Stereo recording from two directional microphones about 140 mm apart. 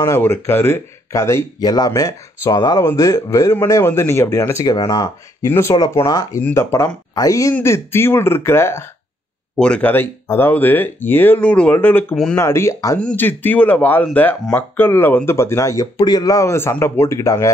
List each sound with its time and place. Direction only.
0.0 s speech: 20° left (ahead or behind)